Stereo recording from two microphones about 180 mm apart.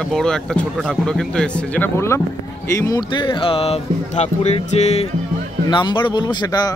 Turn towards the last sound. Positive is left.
turn(degrees=20)  # may be behind; listen again after turning